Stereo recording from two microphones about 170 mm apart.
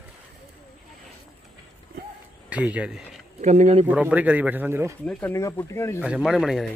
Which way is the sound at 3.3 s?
45° right (ahead or behind).